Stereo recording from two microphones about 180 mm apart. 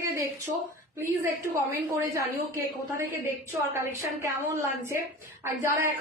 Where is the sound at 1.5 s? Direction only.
15° right (ahead or behind).